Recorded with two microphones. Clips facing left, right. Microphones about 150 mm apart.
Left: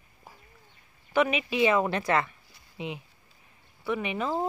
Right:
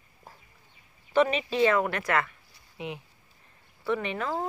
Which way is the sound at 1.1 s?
10° left (ahead or behind).